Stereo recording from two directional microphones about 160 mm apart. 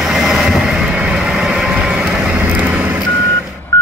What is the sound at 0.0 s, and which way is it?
Vehicle, centre (ahead or behind).